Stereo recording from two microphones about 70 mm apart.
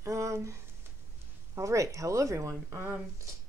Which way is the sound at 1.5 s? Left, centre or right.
Right.